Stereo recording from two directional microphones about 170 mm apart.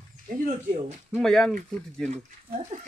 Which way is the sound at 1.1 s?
Centre (ahead or behind).